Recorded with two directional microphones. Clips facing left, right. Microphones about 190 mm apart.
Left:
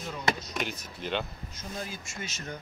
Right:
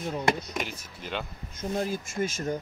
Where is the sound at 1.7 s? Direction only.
55° right (ahead or behind).